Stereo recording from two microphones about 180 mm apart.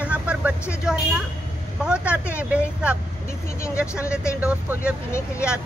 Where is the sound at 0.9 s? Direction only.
5° right (ahead or behind).